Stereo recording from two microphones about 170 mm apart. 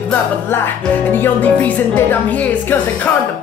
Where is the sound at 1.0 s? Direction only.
10° left (ahead or behind).